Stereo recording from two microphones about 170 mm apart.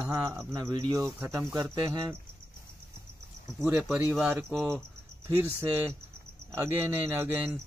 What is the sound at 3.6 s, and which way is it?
Speech, 10° right (ahead or behind).